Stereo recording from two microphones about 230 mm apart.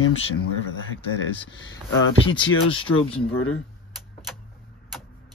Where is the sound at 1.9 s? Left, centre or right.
Left.